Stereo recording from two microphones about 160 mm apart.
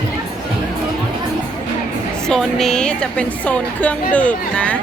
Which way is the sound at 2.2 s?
5° left (ahead or behind).